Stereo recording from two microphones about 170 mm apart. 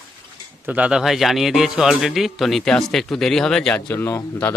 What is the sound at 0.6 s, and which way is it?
A man's voice, 5° right (ahead or behind).